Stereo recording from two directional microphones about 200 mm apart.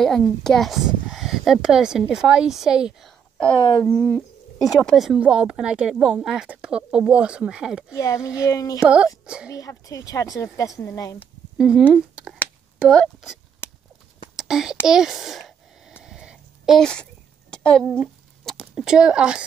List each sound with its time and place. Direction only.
0.0 s speech: centre (ahead or behind)
4.6 s speech: 20° left (ahead or behind)
4.8 s speech: centre (ahead or behind)
7.9 s speech: 15° left (ahead or behind)
8.8 s speech: 5° right (ahead or behind)
9.5 s speech: 15° left (ahead or behind)
11.5 s speech: 5° right (ahead or behind)
13.6 s clip-clop: 10° left (ahead or behind)
14.3 s a sound: centre (ahead or behind)
17.8 s speech: 10° right (ahead or behind)